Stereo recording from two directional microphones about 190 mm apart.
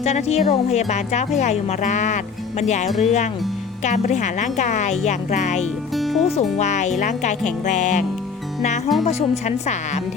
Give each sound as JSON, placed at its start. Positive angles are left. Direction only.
{"t": 0.0, "sound": "speech", "side_deg": 35}
{"t": 5.9, "sound": "music", "side_deg": 0}
{"t": 6.2, "sound": "speech", "side_deg": 35}
{"t": 9.0, "sound": "speech", "side_deg": 35}